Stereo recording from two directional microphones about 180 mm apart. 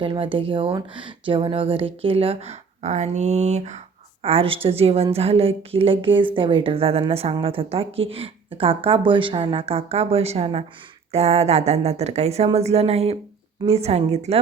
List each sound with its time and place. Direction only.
0.0 s speech: 30° right (ahead or behind)